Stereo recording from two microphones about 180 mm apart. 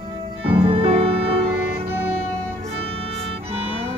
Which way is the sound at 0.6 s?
30° right (ahead or behind).